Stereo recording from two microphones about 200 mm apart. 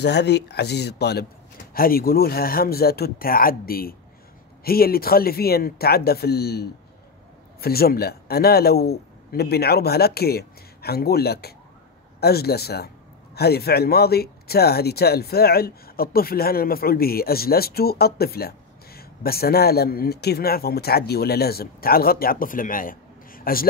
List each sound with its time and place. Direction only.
0.0 s a man's voice: 55° left (ahead or behind)